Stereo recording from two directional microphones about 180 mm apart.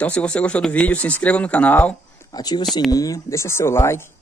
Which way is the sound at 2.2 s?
25° left (ahead or behind).